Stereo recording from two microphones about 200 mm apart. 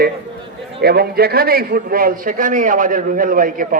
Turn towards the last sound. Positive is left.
turn(degrees=-45)  # may be behind; listen again after turning